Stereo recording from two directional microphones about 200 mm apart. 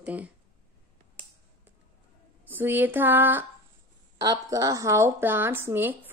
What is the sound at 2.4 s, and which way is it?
A woman's voice, 10° right (ahead or behind).